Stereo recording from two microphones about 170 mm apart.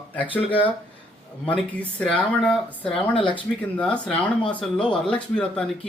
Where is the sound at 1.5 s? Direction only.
10° left (ahead or behind).